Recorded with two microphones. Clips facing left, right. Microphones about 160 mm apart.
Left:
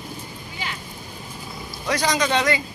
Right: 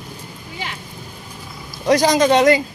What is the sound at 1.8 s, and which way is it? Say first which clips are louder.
Speech: right 8 dB; 40° right (ahead or behind).